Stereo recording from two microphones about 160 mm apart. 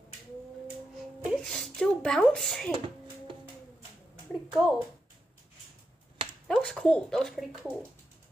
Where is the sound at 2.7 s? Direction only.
35° right (ahead or behind).